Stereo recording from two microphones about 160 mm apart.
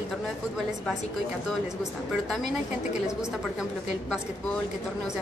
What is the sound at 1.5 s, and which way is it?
A woman's voice, centre (ahead or behind).